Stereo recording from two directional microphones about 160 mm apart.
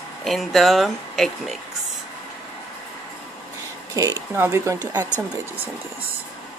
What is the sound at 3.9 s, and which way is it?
Speech, 20° right (ahead or behind).